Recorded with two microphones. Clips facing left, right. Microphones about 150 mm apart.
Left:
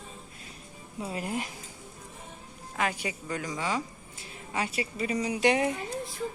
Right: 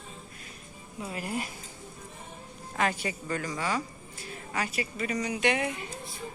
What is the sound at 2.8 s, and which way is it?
A woman's voice, 10° left (ahead or behind).